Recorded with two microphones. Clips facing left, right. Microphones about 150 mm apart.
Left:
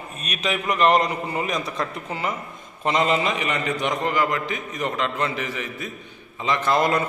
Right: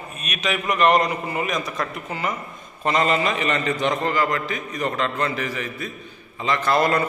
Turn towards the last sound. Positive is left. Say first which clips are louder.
# right 1 dB
turn(degrees=20)  # may be behind; listen again after turning